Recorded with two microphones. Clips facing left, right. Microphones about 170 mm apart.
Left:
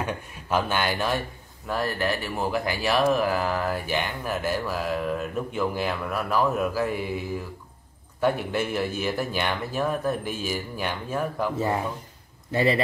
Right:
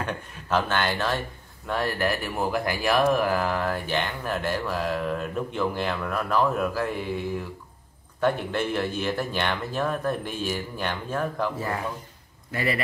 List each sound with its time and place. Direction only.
0.0 s speech: 10° left (ahead or behind)
1.7 s speech: centre (ahead or behind)
8.2 s speech: 5° left (ahead or behind)
12.4 s speech: 25° left (ahead or behind)